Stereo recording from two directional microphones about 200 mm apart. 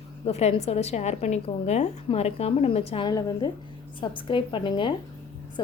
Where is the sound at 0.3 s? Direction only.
30° left (ahead or behind).